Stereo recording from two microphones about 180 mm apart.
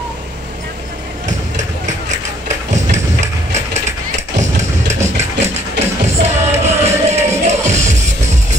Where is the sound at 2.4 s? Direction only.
40° right (ahead or behind).